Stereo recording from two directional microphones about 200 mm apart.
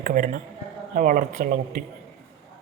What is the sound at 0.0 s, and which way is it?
Speech, 40° right (ahead or behind).